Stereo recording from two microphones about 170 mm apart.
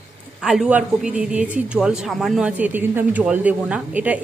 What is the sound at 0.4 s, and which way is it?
Speech, 5° right (ahead or behind).